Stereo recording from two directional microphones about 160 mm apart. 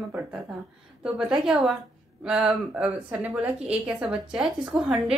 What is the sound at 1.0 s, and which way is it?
A woman's voice, 5° right (ahead or behind).